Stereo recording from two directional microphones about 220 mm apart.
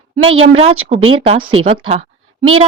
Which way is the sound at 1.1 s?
25° right (ahead or behind).